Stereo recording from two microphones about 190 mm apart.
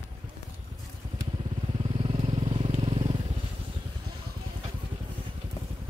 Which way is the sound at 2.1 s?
30° right (ahead or behind).